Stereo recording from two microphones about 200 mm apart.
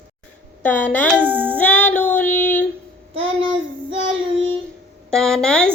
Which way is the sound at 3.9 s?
70° right (ahead or behind).